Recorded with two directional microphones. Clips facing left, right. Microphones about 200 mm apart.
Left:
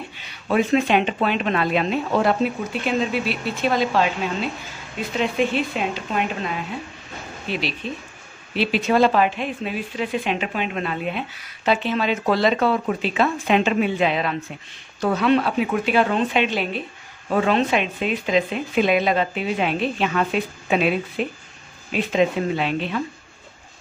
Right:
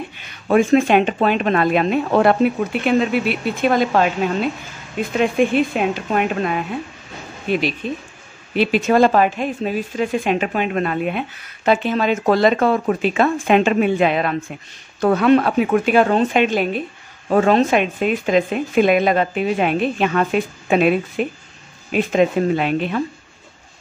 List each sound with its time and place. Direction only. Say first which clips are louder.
0.2 s speech: right 5 dB; 50° right (ahead or behind)
5.1 s speech: right 5 dB; 50° right (ahead or behind)